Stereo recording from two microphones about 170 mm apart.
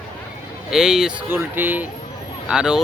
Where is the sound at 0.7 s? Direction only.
5° right (ahead or behind).